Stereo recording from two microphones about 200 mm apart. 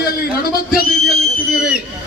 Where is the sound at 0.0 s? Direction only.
45° left (ahead or behind).